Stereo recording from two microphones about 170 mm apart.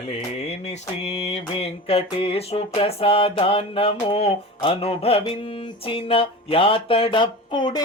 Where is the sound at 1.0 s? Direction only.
35° left (ahead or behind).